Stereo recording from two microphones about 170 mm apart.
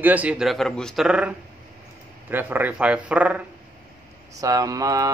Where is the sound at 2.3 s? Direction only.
10° right (ahead or behind).